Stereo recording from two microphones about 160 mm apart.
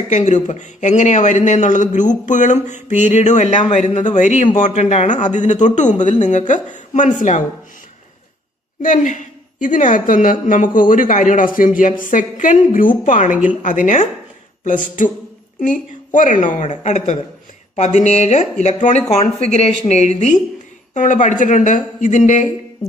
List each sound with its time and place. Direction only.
0.1 s a man's voice: 45° left (ahead or behind)
8.8 s a woman's voice: 50° left (ahead or behind)